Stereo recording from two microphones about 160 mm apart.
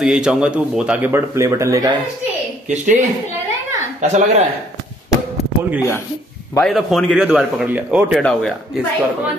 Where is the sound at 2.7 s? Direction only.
50° right (ahead or behind).